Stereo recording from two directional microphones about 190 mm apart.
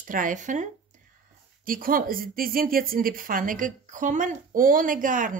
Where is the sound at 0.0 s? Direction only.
45° right (ahead or behind).